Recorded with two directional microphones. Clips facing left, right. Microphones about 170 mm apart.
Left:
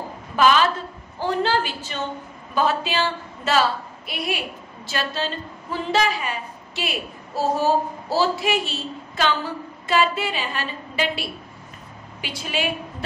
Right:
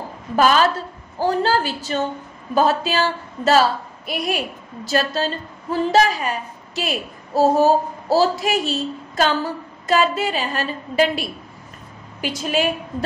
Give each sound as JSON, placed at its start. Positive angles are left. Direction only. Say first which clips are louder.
{"t": 0.4, "sound": "a woman's voice", "louder": "right 2 dB", "side_deg": -40}